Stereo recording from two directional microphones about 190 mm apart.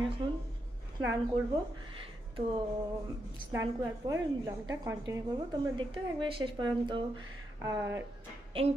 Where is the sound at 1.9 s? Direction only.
25° right (ahead or behind).